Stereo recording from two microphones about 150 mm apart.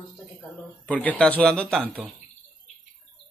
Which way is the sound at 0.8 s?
10° left (ahead or behind).